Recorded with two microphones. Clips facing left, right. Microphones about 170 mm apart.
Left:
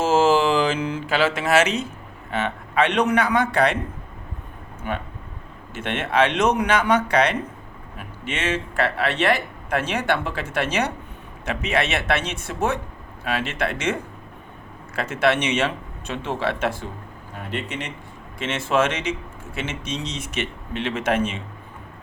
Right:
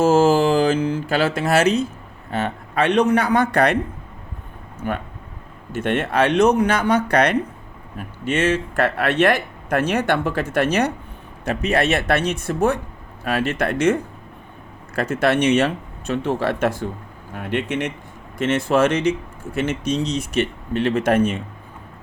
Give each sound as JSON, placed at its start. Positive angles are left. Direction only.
{"t": 0.1, "sound": "mantra", "side_deg": -45}
{"t": 1.1, "sound": "speech", "side_deg": -40}
{"t": 5.7, "sound": "speech", "side_deg": -40}